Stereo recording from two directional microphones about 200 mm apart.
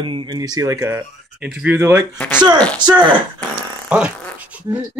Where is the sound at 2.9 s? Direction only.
25° right (ahead or behind).